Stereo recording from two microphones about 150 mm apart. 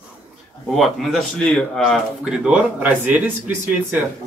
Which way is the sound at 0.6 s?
Centre (ahead or behind).